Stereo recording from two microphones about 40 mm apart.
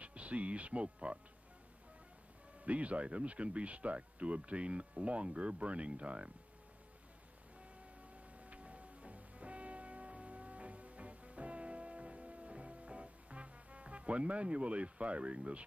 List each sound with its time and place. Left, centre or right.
0.0 s speech: right
2.6 s speech: right
8.4 s music: right